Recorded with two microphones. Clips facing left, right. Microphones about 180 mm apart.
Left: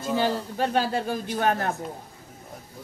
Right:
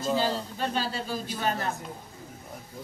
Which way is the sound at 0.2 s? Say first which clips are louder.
Left 4 dB; 55° left (ahead or behind).